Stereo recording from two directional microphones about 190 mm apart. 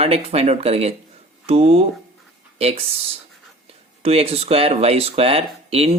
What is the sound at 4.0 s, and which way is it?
Speech, 30° right (ahead or behind).